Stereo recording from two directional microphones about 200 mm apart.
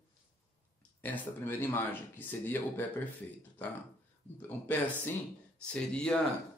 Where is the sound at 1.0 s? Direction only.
10° left (ahead or behind).